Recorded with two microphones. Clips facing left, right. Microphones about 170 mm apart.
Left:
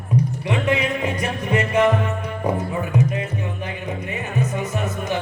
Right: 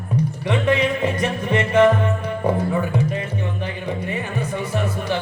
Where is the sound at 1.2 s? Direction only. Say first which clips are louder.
Right 1 dB; 30° right (ahead or behind).